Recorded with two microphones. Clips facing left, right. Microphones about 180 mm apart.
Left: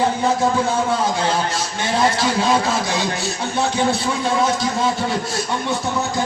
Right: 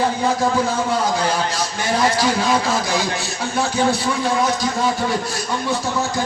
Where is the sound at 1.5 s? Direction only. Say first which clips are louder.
Even; 25° left (ahead or behind).